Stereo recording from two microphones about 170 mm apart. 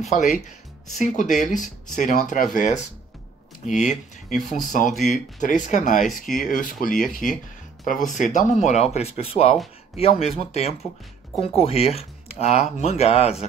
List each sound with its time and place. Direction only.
0.0 s speech: 45° left (ahead or behind)
4.3 s speech: centre (ahead or behind)
5.4 s speech: 45° left (ahead or behind)